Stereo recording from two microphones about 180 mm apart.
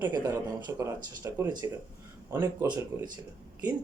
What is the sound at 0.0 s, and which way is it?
Speech, 20° right (ahead or behind).